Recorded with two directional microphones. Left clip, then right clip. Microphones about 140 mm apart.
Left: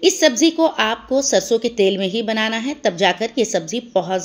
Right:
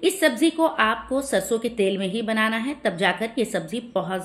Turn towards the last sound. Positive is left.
turn(degrees=35)  # may be behind; listen again after turning